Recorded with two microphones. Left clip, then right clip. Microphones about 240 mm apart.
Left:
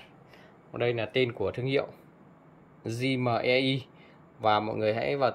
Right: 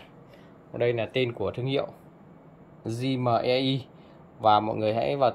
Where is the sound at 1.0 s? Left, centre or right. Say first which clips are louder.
Even; left.